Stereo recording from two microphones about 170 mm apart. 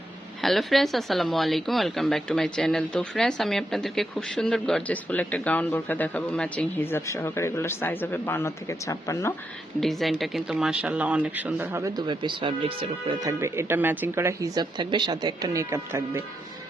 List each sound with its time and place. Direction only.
0.4 s speech: centre (ahead or behind); by 9.3 s 15° left (ahead or behind)
9.8 s speech: centre (ahead or behind); by 13.3 s 30° right (ahead or behind)
13.4 s speech: 15° right (ahead or behind)